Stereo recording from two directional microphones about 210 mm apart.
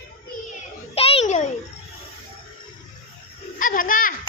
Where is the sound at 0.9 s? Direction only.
30° left (ahead or behind).